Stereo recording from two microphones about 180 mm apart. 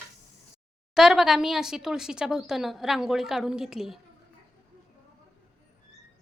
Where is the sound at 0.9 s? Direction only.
5° right (ahead or behind).